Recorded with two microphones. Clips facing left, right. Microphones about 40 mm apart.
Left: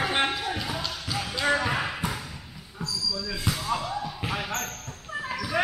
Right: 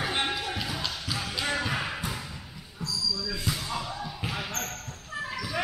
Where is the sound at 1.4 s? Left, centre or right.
Centre.